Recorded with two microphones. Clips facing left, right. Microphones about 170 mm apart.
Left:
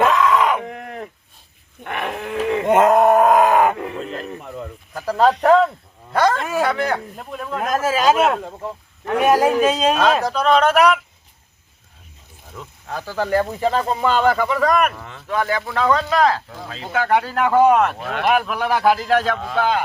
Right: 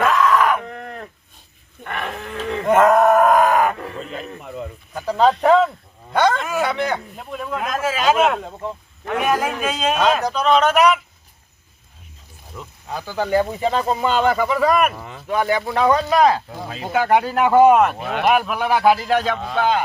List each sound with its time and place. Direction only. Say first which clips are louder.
0.0 s a sound: left 1 dB; 20° left (ahead or behind)
1.8 s livestock: left 2 dB; 15° left (ahead or behind)
2.6 s groan: even; 20° left (ahead or behind)
3.8 s a sound: left 3 dB; 15° left (ahead or behind)
4.0 s a sound: left 2 dB; centre (ahead or behind)
5.4 s speech: left 1 dB; centre (ahead or behind)
7.6 s a man's voice: left 3 dB; 40° left (ahead or behind)
9.2 s a man's voice: left 7 dB; 35° left (ahead or behind)
10.2 s speech: left 1 dB; centre (ahead or behind)
12.5 s speech: even; 5° right (ahead or behind)